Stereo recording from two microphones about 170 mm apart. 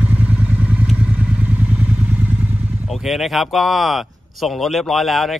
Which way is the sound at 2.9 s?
Centre (ahead or behind).